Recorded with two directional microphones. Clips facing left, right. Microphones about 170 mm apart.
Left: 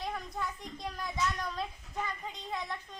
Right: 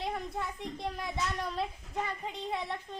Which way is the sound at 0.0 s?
25° right (ahead or behind).